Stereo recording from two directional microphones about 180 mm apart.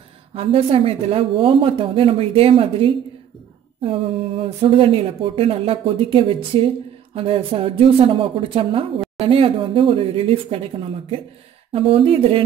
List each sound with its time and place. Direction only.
0.3 s speech: 35° right (ahead or behind)
11.7 s speech: 30° right (ahead or behind)